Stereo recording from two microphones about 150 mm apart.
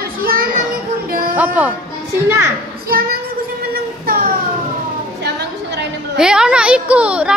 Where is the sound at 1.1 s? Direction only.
75° right (ahead or behind).